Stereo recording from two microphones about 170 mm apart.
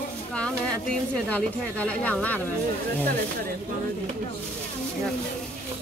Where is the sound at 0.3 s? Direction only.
5° left (ahead or behind).